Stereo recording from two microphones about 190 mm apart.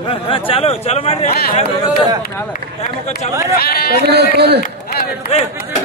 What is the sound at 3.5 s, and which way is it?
Speech, 55° left (ahead or behind).